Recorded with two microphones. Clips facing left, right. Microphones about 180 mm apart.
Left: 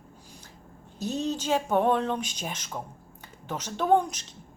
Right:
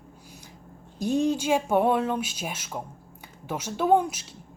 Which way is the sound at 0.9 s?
10° right (ahead or behind).